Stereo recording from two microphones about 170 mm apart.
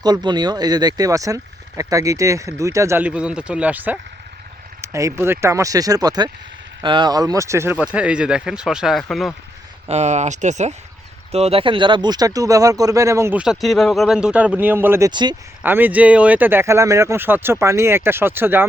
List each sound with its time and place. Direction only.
0.0 s speech: 25° right (ahead or behind); by 9.3 s centre (ahead or behind)
9.9 s speech: 40° right (ahead or behind); by 13.4 s 15° right (ahead or behind)
13.4 s speech: centre (ahead or behind)
15.1 s speech: 25° right (ahead or behind)
15.6 s speech: 10° right (ahead or behind)